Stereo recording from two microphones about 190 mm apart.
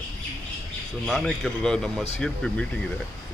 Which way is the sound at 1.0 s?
Centre (ahead or behind).